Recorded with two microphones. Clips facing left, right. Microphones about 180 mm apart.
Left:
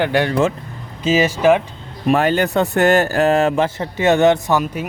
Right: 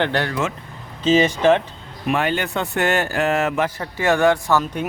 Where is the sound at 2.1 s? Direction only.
40° left (ahead or behind); by 4.6 s 20° left (ahead or behind).